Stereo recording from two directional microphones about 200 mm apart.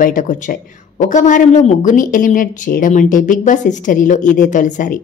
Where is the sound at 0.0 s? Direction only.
40° left (ahead or behind).